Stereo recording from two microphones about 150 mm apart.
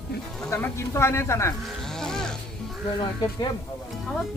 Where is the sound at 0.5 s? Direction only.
15° left (ahead or behind).